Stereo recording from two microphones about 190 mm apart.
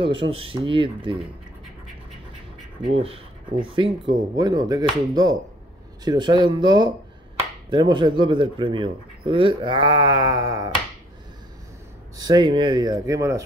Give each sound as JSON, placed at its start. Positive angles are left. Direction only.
{"t": 0.0, "sound": "speech", "side_deg": -30}
{"t": 2.9, "sound": "speech", "side_deg": -30}
{"t": 12.2, "sound": "speech", "side_deg": -20}